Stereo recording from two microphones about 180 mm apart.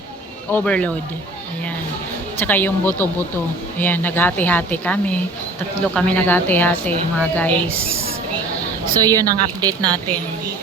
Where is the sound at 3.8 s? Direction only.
10° left (ahead or behind).